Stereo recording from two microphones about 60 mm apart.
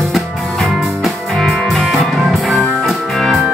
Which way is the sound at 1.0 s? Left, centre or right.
Centre.